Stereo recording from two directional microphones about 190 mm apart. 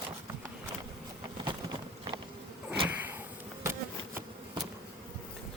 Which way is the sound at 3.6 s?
15° right (ahead or behind).